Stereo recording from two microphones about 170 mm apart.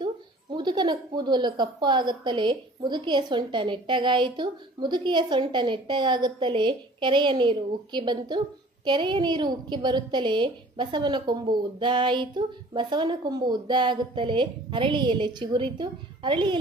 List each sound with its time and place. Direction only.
0.5 s a woman's voice: 25° right (ahead or behind)